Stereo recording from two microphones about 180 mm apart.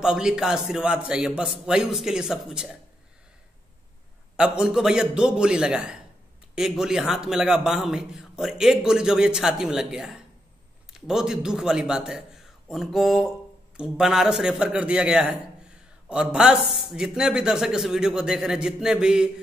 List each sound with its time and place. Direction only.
0.0 s a man's voice: 5° right (ahead or behind)
4.6 s a man's voice: 5° right (ahead or behind)